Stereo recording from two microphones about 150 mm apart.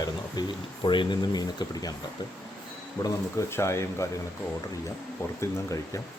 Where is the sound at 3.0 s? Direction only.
20° left (ahead or behind).